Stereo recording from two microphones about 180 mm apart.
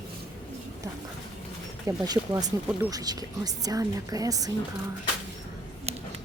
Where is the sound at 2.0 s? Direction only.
20° right (ahead or behind).